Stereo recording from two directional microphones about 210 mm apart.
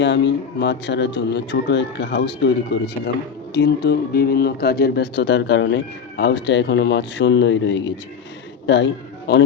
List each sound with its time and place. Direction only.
0.0 s speech: 55° left (ahead or behind)
3.5 s a man's voice: 50° left (ahead or behind)